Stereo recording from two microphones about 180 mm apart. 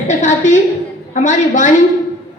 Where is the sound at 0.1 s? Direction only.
45° left (ahead or behind).